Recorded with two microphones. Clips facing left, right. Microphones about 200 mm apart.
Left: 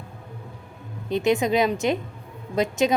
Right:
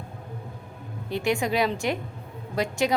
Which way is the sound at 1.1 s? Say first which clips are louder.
Left 4 dB; 20° left (ahead or behind).